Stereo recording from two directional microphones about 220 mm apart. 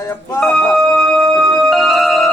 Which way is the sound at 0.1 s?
5° left (ahead or behind).